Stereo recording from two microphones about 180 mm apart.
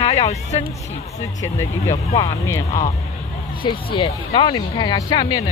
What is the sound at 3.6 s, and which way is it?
Speech, 25° left (ahead or behind).